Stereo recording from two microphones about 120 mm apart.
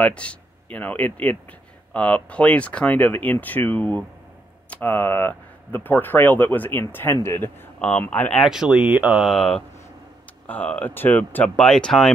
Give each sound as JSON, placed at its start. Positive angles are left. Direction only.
{"t": 0.0, "sound": "speech", "side_deg": 10}
{"t": 8.4, "sound": "speech", "side_deg": -5}